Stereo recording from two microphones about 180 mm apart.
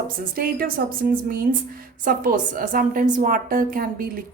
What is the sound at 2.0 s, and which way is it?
A woman's voice, 50° right (ahead or behind).